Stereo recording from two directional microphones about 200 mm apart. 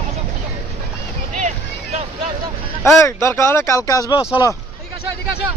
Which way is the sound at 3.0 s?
15° left (ahead or behind).